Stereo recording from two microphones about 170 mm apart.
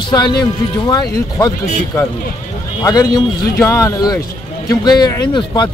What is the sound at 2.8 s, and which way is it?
Speech, 20° left (ahead or behind).